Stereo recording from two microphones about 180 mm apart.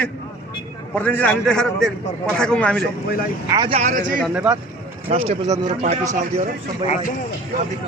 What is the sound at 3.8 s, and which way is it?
Speech, 45° right (ahead or behind).